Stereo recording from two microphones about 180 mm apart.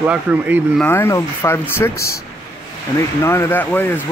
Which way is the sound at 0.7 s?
10° left (ahead or behind).